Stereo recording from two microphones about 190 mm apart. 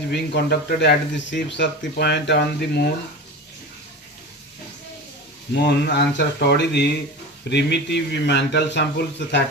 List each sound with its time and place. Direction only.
0.1 s speech: 60° left (ahead or behind)
5.5 s speech: 60° left (ahead or behind)